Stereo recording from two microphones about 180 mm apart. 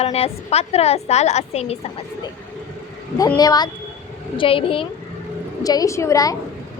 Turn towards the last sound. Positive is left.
turn(degrees=20)  # may be behind; listen again after turning